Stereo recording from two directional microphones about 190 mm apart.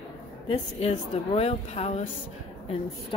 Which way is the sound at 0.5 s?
30° left (ahead or behind).